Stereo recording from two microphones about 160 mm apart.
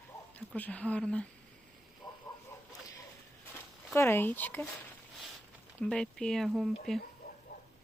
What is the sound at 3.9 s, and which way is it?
Speech, 15° left (ahead or behind).